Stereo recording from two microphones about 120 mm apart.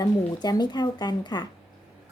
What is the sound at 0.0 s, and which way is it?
A woman's voice, 35° left (ahead or behind).